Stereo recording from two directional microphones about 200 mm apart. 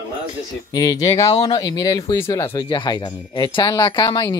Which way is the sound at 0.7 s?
20° left (ahead or behind).